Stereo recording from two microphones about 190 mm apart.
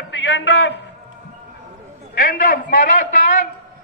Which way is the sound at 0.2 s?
70° left (ahead or behind).